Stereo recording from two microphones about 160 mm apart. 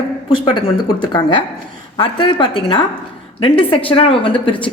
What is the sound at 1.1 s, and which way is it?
A woman's voice, 30° left (ahead or behind).